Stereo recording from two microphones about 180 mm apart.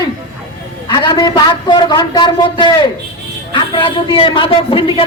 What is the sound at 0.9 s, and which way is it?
Speech, 25° left (ahead or behind).